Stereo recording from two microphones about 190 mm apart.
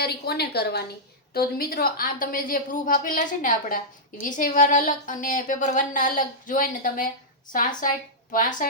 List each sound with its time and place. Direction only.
0.0 s a woman's voice: 55° left (ahead or behind)